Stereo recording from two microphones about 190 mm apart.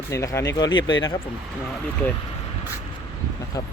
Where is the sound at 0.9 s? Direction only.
90° left.